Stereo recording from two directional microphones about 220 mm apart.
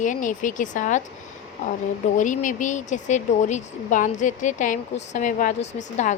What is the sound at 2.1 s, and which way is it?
Speech, 35° left (ahead or behind).